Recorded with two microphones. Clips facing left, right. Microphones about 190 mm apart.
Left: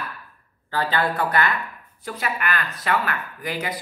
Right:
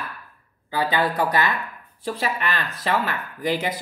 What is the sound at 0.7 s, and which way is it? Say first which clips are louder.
Speech: right 1 dB; 10° right (ahead or behind).